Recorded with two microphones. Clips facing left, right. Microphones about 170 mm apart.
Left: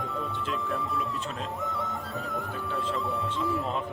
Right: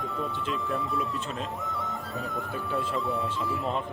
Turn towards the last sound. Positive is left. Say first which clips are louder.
# left 1 dB
turn(degrees=0)  # may be behind; listen again after turning